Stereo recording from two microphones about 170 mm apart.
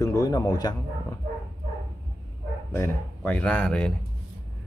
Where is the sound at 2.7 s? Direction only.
10° left (ahead or behind).